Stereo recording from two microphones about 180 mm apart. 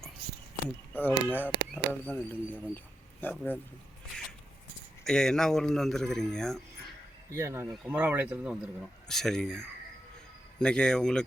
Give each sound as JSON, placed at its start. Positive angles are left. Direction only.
{"t": 0.9, "sound": "speech", "side_deg": 10}
{"t": 5.0, "sound": "speech", "side_deg": 5}
{"t": 7.3, "sound": "speech", "side_deg": -15}